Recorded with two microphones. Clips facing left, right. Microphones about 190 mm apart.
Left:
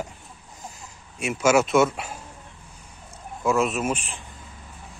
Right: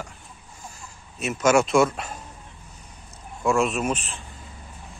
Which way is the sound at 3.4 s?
Centre (ahead or behind).